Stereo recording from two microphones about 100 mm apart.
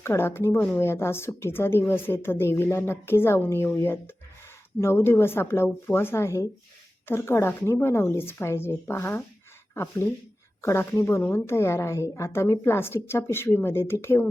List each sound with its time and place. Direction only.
0.0 s a woman's voice: 25° left (ahead or behind)